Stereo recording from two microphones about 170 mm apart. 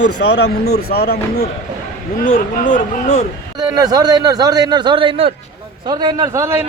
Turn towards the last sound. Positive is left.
turn(degrees=-20)  # may be behind; listen again after turning